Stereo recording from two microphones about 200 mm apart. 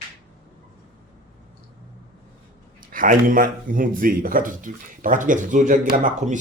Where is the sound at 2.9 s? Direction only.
40° right (ahead or behind).